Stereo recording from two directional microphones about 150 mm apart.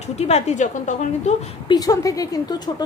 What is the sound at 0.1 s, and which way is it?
A woman's voice, 45° left (ahead or behind).